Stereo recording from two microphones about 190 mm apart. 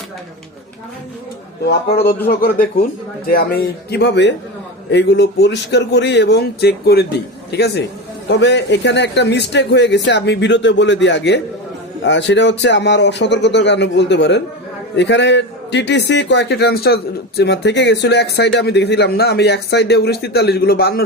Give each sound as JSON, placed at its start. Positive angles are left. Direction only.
{"t": 1.6, "sound": "a man's voice", "side_deg": 55}